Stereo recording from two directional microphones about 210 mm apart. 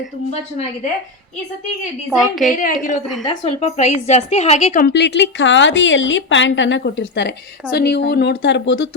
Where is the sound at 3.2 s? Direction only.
25° left (ahead or behind).